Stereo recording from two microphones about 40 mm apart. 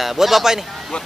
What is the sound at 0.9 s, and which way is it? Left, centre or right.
Speech, left.